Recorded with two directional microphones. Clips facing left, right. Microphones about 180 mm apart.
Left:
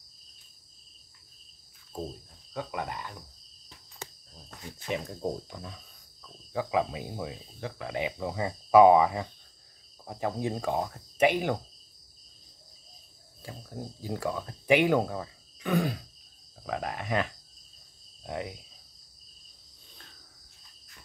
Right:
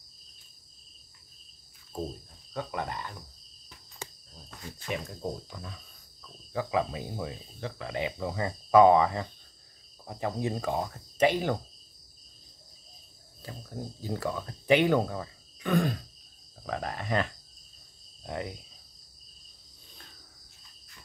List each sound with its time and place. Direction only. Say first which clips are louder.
2.5 s cricket: right 1 dB; 10° left (ahead or behind)
4.7 s speech: left 2 dB; 25° left (ahead or behind)
6.2 s cricket: left 1 dB; 10° left (ahead or behind)
13.4 s cricket: right 1 dB; 10° left (ahead or behind)
18.2 s speech: even; 5° left (ahead or behind)